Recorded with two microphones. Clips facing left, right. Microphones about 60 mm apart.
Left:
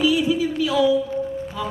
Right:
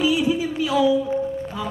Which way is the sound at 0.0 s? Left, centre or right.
Right.